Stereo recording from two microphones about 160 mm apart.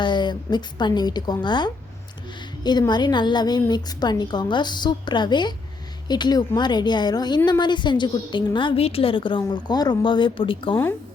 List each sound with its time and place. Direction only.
0.0 s a woman's voice: 30° left (ahead or behind)